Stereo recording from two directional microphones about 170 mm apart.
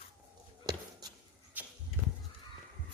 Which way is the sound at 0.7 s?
25° right (ahead or behind).